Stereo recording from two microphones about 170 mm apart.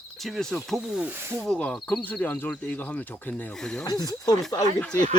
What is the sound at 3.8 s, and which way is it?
Speech, 20° left (ahead or behind).